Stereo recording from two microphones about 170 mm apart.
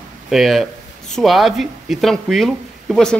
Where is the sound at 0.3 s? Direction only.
Centre (ahead or behind).